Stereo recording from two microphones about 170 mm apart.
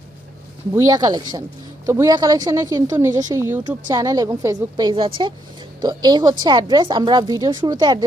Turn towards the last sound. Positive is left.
turn(degrees=-25)  # may be behind; listen again after turning